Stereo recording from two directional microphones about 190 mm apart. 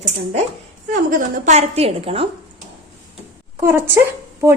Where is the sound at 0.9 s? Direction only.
45° right (ahead or behind).